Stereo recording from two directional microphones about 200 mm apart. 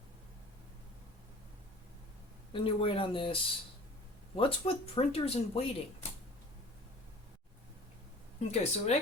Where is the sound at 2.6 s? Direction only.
25° left (ahead or behind).